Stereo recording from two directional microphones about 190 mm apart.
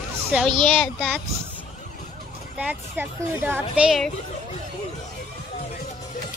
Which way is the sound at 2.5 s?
10° right (ahead or behind).